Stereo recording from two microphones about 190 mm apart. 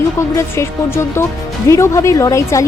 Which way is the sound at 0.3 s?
15° left (ahead or behind).